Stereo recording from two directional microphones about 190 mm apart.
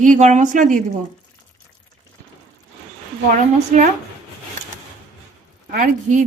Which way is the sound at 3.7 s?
45° right (ahead or behind).